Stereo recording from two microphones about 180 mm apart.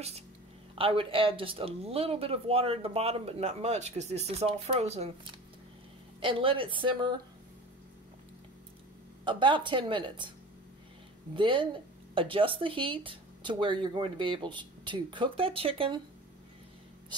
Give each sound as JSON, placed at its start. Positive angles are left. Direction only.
{"t": 0.7, "sound": "speech", "side_deg": -30}
{"t": 6.2, "sound": "speech", "side_deg": -30}
{"t": 9.2, "sound": "speech", "side_deg": -25}
{"t": 11.3, "sound": "speech", "side_deg": -30}